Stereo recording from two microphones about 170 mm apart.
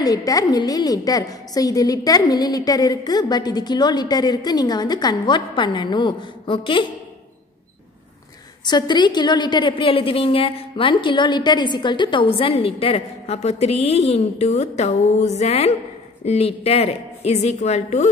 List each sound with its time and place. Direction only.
0.0 s a woman's voice: 20° left (ahead or behind)
8.6 s a woman's voice: 25° left (ahead or behind); by 18.1 s 40° left (ahead or behind)